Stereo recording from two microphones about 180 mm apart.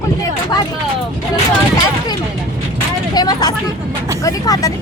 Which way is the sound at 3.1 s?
20° left (ahead or behind).